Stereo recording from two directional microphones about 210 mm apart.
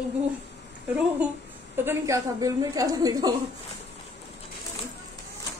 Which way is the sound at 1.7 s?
10° right (ahead or behind).